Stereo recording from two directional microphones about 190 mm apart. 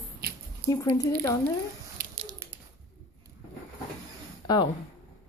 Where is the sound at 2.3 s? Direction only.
15° right (ahead or behind).